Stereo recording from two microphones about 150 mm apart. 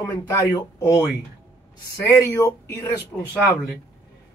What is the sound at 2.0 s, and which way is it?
Speech, 20° left (ahead or behind).